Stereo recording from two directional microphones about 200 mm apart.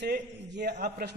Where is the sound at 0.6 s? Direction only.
45° right (ahead or behind).